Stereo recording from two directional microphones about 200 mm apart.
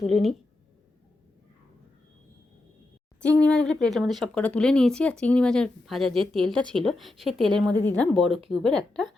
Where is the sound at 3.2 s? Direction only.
5° left (ahead or behind).